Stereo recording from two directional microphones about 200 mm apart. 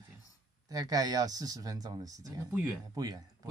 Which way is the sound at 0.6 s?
20° right (ahead or behind).